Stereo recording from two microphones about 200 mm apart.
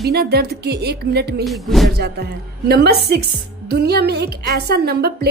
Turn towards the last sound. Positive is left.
turn(degrees=-55)  # may be behind; listen again after turning